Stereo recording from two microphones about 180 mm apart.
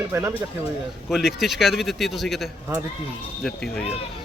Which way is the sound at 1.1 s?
Centre (ahead or behind).